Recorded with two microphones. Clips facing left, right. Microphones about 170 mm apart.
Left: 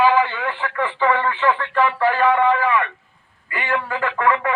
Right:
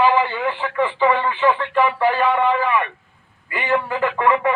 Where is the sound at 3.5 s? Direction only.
15° right (ahead or behind).